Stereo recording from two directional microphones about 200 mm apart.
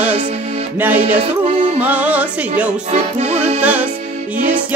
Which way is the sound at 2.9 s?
35° right (ahead or behind).